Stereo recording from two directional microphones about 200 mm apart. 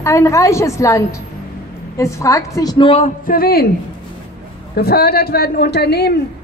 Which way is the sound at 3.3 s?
50° left (ahead or behind).